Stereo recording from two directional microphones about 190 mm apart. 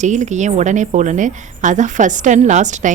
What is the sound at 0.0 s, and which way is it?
A woman's voice, 40° right (ahead or behind).